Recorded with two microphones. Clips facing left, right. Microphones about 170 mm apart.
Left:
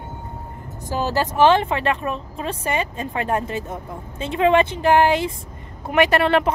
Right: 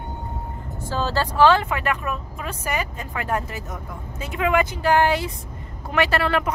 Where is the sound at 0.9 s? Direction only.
15° left (ahead or behind).